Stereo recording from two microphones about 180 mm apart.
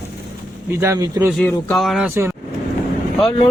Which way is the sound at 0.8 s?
15° right (ahead or behind).